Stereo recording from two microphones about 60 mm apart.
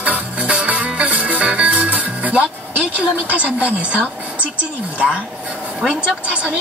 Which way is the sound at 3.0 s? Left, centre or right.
Right.